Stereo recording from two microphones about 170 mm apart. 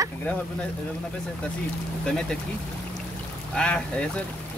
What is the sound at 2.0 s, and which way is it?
Speech, 5° left (ahead or behind).